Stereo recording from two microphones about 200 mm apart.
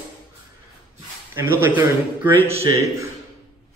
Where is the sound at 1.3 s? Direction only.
10° right (ahead or behind).